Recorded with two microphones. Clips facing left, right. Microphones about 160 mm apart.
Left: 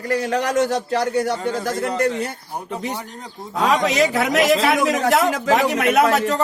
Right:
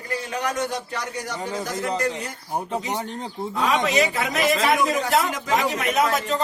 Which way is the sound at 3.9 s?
70° left (ahead or behind).